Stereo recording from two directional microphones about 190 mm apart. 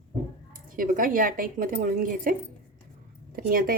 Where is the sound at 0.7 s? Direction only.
45° right (ahead or behind).